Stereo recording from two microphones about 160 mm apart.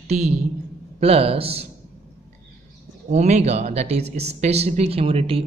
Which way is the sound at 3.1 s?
45° right (ahead or behind).